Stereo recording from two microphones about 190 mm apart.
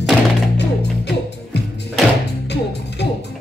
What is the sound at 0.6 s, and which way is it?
Music, 65° left (ahead or behind).